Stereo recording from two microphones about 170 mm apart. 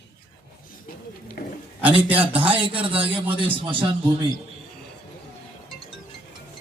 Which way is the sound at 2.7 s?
30° right (ahead or behind).